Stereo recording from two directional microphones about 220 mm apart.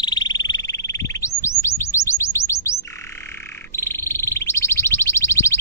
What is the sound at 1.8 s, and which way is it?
Chirp, 15° left (ahead or behind).